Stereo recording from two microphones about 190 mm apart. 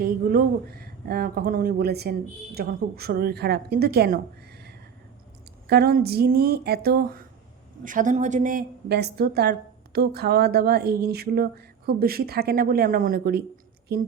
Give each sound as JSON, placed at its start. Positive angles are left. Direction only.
{"t": 0.0, "sound": "a woman's voice", "side_deg": -50}
{"t": 5.6, "sound": "a woman's voice", "side_deg": -55}
{"t": 7.9, "sound": "a woman's voice", "side_deg": -40}